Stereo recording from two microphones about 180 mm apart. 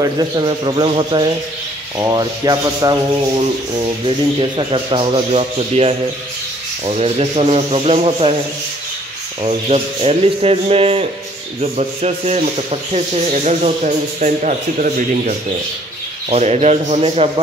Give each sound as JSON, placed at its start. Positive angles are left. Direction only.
{"t": 0.0, "sound": "a man's voice", "side_deg": -25}
{"t": 4.4, "sound": "speech", "side_deg": -30}
{"t": 9.4, "sound": "speech", "side_deg": -35}